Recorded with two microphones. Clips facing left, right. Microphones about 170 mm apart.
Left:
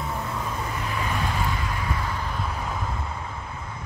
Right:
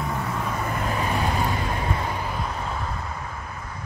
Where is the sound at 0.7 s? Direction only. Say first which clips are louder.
Right 3 dB; 45° right (ahead or behind).